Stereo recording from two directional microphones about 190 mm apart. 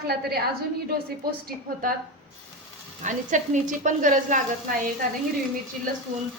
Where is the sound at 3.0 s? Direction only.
40° right (ahead or behind).